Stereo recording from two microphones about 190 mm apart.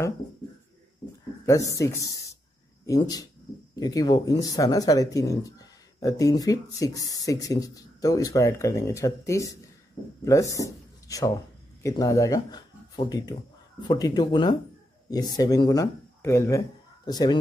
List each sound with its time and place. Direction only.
1.4 s speech: 15° left (ahead or behind)